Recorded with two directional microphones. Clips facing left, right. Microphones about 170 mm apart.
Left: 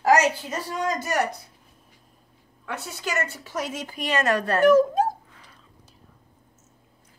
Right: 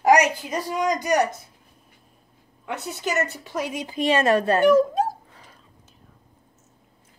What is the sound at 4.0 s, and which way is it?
Speech, 30° right (ahead or behind).